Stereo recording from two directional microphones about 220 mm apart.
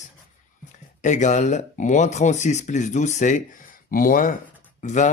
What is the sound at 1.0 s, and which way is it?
Speech, 35° left (ahead or behind).